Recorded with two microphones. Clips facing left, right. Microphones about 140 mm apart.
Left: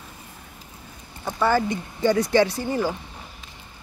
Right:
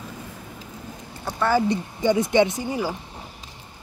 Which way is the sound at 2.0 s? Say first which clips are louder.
Even; 20° right (ahead or behind).